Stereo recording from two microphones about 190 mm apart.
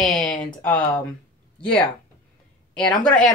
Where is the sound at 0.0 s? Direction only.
Centre (ahead or behind).